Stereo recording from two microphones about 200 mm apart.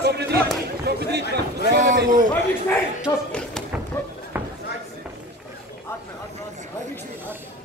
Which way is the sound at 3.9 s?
15° left (ahead or behind).